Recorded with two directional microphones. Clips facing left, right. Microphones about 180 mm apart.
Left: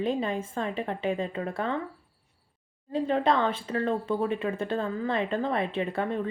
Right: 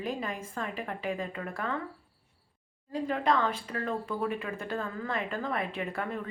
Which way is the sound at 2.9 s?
25° left (ahead or behind).